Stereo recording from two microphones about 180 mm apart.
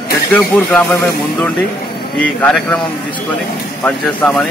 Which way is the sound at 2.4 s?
5° left (ahead or behind).